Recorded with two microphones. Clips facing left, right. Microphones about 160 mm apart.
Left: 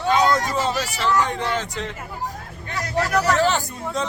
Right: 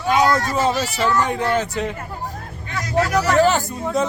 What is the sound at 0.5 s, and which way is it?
A man's voice, 10° right (ahead or behind).